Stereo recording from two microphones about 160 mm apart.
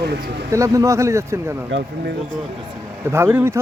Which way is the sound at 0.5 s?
20° right (ahead or behind).